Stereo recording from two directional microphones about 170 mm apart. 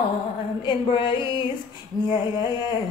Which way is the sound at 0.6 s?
25° left (ahead or behind).